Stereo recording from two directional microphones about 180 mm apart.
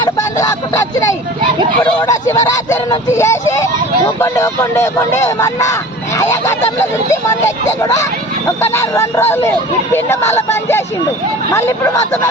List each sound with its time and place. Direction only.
0.3 s speech: 15° left (ahead or behind)